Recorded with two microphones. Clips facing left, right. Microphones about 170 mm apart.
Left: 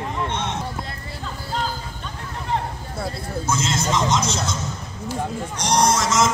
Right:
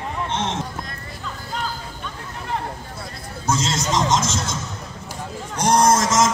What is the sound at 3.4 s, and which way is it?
Music, 35° right (ahead or behind).